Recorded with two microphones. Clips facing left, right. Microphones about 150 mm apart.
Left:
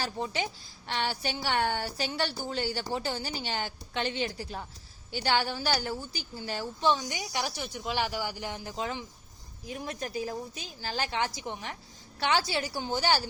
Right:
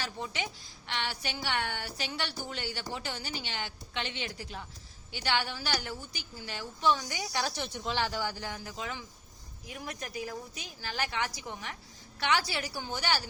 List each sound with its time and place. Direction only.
0.0 s a woman's voice: 35° left (ahead or behind)
6.9 s a woman's voice: 20° left (ahead or behind)